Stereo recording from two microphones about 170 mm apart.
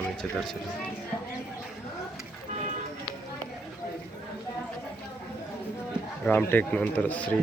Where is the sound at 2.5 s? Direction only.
45° right (ahead or behind).